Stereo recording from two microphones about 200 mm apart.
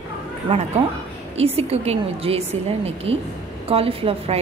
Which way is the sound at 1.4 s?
30° right (ahead or behind).